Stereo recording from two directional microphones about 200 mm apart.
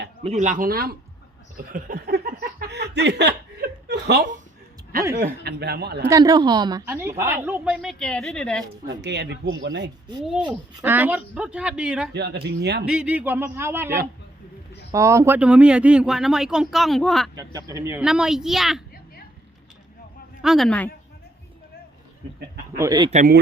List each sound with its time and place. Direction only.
0.2 s speech: 35° right (ahead or behind)
1.7 s laughter: 50° right (ahead or behind)
4.9 s a man's voice: 45° right (ahead or behind)
6.0 s a woman's voice: 15° right (ahead or behind); by 8.6 s 5° left (ahead or behind)
8.9 s speech: 60° right (ahead or behind)
10.8 s speech: 10° right (ahead or behind)
12.1 s speech: 55° right (ahead or behind)
12.8 s a woman's voice: 5° right (ahead or behind)
17.3 s a woman's voice: 20° right (ahead or behind)
18.0 s speech: 5° right (ahead or behind)
20.4 s speech: centre (ahead or behind)
22.8 s speech: 20° right (ahead or behind)
23.1 s a man's voice: 45° right (ahead or behind)